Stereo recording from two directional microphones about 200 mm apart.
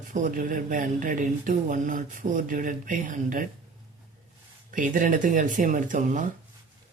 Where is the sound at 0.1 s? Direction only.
40° right (ahead or behind).